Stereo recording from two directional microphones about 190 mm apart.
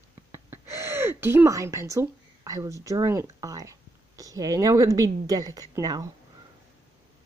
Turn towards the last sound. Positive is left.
turn(degrees=-20)  # may be behind; listen again after turning